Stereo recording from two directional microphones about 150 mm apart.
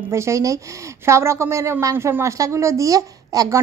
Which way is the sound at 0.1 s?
20° right (ahead or behind).